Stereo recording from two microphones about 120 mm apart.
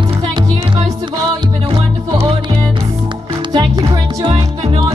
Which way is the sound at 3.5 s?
35° right (ahead or behind).